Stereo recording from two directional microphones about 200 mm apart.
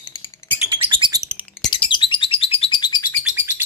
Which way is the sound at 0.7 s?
25° right (ahead or behind).